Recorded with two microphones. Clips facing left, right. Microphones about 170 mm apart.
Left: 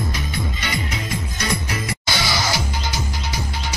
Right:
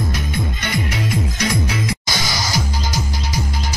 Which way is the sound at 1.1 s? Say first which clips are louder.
Right 4 dB; 90° right.